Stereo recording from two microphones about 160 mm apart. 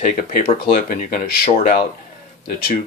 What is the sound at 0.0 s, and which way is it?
Speech, 65° left (ahead or behind).